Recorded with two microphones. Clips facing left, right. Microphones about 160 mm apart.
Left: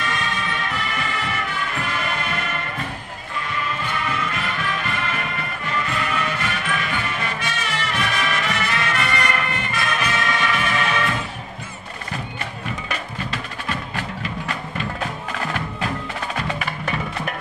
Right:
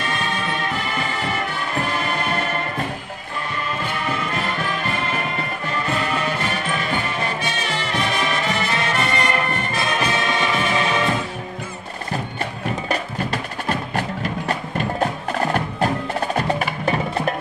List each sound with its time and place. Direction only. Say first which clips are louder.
0.0 s music: right 2 dB; 35° right (ahead or behind)
4.1 s music: right 2 dB; 35° right (ahead or behind)
12.8 s music: right 5 dB; 40° right (ahead or behind)